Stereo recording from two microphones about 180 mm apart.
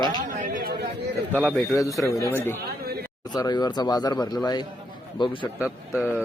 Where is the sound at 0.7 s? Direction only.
65° right (ahead or behind).